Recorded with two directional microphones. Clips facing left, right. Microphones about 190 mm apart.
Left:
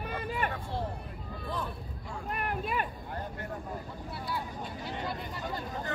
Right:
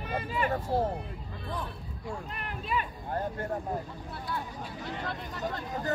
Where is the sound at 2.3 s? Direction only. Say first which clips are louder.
Left 3 dB; 50° left (ahead or behind).